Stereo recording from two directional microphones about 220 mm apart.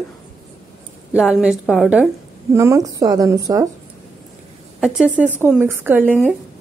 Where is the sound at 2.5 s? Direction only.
15° right (ahead or behind).